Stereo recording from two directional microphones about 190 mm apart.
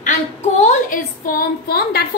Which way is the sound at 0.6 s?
45° left (ahead or behind).